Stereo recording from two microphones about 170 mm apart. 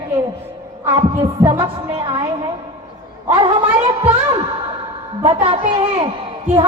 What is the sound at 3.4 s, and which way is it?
Speech, 30° right (ahead or behind).